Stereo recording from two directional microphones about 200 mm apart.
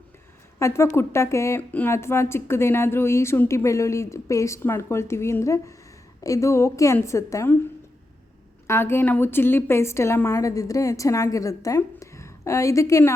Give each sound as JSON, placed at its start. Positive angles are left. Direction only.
{"t": 0.6, "sound": "a woman's voice", "side_deg": 15}
{"t": 8.6, "sound": "a woman's voice", "side_deg": 10}